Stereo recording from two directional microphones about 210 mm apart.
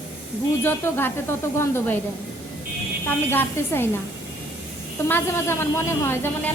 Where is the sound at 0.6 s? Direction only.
10° left (ahead or behind).